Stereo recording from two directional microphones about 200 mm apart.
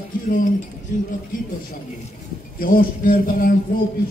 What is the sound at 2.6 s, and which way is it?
Speech, 45° left (ahead or behind).